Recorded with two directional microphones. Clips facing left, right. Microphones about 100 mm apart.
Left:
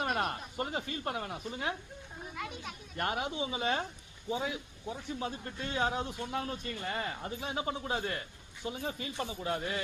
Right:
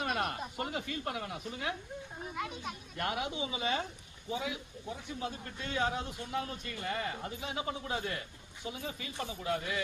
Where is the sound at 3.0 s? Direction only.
40° left (ahead or behind).